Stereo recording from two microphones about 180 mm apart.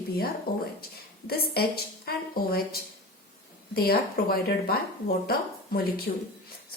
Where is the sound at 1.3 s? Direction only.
60° left (ahead or behind).